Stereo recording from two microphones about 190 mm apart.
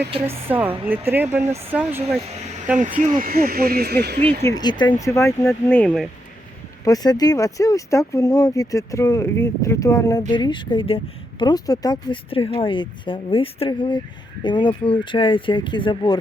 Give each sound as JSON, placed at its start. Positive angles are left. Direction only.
{"t": 0.4, "sound": "speech", "side_deg": -10}
{"t": 2.7, "sound": "speech", "side_deg": -40}
{"t": 4.4, "sound": "speech", "side_deg": 20}
{"t": 6.8, "sound": "speech", "side_deg": 20}